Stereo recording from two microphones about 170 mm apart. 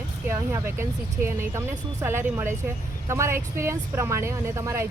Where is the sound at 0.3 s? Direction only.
15° right (ahead or behind).